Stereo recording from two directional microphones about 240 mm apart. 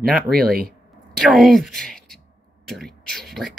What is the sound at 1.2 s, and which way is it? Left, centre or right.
A woman's voice, centre.